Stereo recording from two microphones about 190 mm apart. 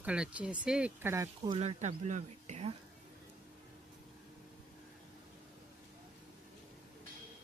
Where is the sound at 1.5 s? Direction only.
30° right (ahead or behind).